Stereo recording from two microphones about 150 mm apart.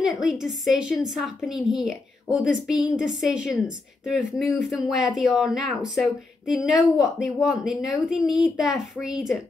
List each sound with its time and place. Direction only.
0.0 s speech: centre (ahead or behind)